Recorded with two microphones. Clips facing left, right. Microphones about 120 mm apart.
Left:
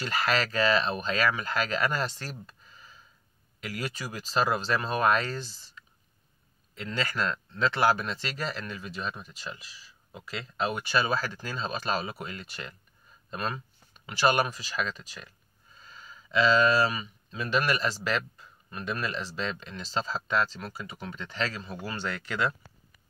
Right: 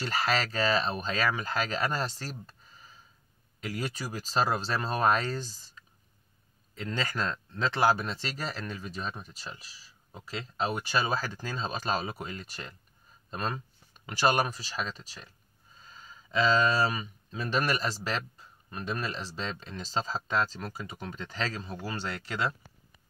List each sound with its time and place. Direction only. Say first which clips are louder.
0.0 s speech: left 1 dB; 35° right (ahead or behind)
3.6 s speech: right 1 dB; 35° right (ahead or behind)
7.2 s speech: left 2 dB; 35° right (ahead or behind)